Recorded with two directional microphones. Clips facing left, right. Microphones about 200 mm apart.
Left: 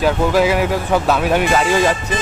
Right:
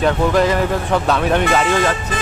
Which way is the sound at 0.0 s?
5° left (ahead or behind).